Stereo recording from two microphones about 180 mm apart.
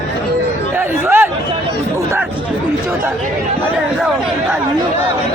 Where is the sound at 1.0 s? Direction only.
10° right (ahead or behind).